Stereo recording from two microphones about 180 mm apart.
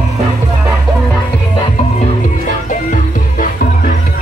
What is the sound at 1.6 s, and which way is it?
Music, 40° left (ahead or behind).